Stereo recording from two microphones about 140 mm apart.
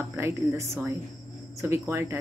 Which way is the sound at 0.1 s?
15° right (ahead or behind).